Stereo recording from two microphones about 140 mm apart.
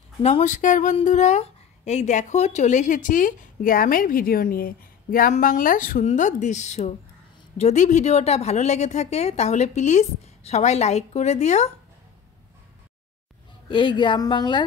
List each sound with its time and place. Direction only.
0.2 s a woman's voice: 55° left (ahead or behind); by 6.0 s 75° left (ahead or behind)
6.0 s a woman's voice: 60° left (ahead or behind)
13.7 s speech: 35° left (ahead or behind)